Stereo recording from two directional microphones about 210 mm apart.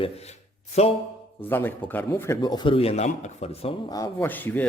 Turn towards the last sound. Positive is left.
turn(degrees=10)  # may be behind; listen again after turning